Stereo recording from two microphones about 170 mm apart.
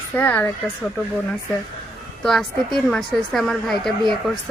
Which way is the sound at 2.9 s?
Centre (ahead or behind).